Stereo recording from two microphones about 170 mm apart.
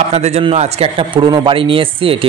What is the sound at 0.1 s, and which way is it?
A man's voice, 40° right (ahead or behind).